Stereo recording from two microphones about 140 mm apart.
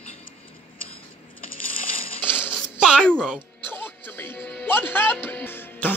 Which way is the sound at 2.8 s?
5° right (ahead or behind).